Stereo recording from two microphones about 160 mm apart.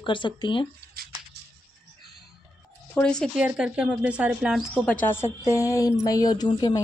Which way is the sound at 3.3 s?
5° right (ahead or behind).